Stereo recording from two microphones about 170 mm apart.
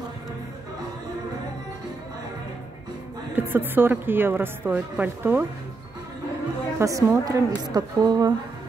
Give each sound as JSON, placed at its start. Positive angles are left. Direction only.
{"t": 3.3, "sound": "a woman's voice", "side_deg": -10}
{"t": 6.8, "sound": "a woman's voice", "side_deg": -20}